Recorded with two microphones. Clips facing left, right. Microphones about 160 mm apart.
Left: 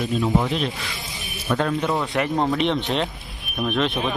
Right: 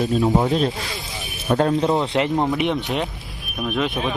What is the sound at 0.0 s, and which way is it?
Speech, 40° right (ahead or behind).